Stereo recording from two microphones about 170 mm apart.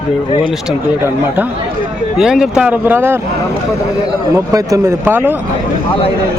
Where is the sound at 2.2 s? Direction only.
5° right (ahead or behind).